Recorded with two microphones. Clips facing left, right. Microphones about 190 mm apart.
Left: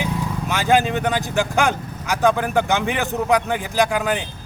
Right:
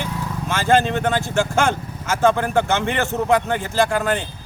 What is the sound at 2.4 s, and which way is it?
A man's voice, 15° left (ahead or behind).